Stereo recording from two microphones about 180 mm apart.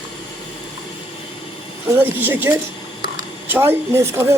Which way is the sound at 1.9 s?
10° right (ahead or behind).